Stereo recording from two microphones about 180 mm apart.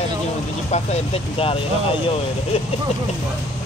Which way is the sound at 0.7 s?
35° left (ahead or behind).